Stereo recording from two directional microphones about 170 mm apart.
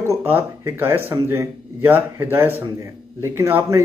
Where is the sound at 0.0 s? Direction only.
15° right (ahead or behind).